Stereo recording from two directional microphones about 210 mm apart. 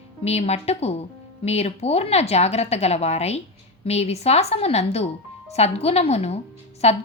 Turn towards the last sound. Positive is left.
turn(degrees=30)  # may be behind; listen again after turning